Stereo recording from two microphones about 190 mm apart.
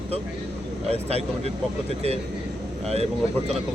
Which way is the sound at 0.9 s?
35° right (ahead or behind).